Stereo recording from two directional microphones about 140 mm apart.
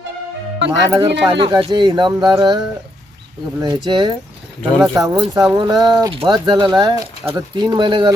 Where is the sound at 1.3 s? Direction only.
35° right (ahead or behind).